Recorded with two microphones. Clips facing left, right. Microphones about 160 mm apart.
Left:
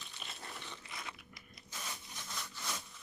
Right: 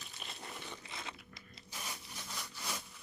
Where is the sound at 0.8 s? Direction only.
25° right (ahead or behind).